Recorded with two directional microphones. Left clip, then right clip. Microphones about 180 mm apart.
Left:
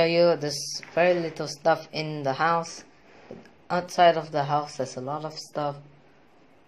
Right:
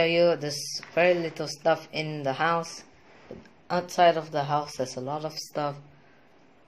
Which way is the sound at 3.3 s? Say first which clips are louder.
Even; 5° right (ahead or behind).